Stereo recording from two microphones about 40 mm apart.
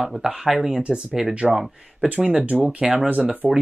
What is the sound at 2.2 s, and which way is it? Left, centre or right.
Speech, right.